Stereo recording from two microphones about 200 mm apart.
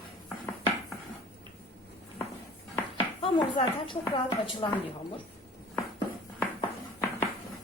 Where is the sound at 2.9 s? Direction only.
25° left (ahead or behind).